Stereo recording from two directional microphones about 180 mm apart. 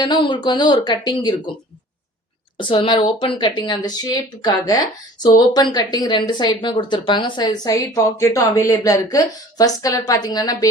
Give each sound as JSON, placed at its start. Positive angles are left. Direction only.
{"t": 0.0, "sound": "speech", "side_deg": 25}
{"t": 2.6, "sound": "speech", "side_deg": 25}